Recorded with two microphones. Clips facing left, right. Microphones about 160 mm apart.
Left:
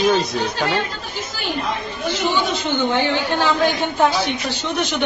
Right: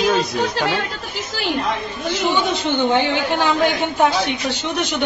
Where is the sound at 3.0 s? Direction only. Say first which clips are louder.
Even; 15° right (ahead or behind).